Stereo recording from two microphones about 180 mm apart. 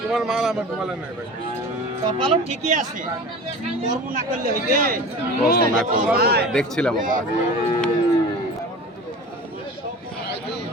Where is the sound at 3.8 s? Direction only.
50° right (ahead or behind).